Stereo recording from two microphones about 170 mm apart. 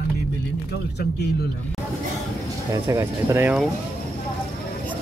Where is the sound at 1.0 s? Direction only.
75° left (ahead or behind).